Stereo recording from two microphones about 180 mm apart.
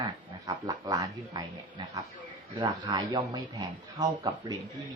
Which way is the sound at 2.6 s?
25° right (ahead or behind).